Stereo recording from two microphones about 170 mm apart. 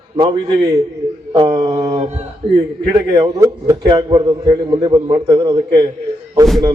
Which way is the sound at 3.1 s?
20° right (ahead or behind).